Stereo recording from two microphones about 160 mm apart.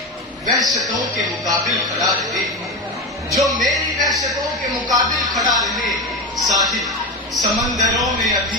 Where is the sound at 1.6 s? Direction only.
Centre (ahead or behind).